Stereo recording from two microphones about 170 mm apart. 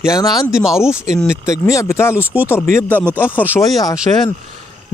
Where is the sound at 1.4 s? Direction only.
20° left (ahead or behind).